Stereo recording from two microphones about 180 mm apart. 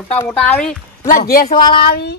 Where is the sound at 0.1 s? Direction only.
10° left (ahead or behind).